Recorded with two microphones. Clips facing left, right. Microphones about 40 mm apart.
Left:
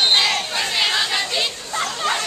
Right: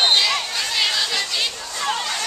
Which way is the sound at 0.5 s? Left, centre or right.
Left.